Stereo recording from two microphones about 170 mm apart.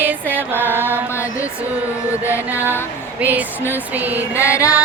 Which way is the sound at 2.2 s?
10° right (ahead or behind).